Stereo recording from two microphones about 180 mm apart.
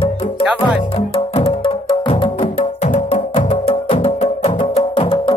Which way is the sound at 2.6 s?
40° left (ahead or behind).